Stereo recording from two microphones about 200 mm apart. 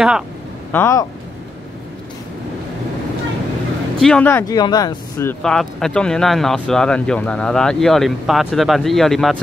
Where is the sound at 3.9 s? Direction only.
5° left (ahead or behind).